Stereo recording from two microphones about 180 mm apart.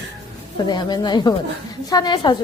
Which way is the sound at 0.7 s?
25° left (ahead or behind).